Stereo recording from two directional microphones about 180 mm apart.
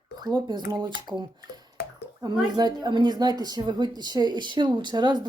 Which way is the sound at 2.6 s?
25° right (ahead or behind).